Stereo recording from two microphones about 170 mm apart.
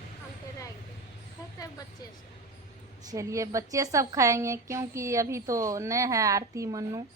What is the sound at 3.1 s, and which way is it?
A woman's voice, 20° right (ahead or behind).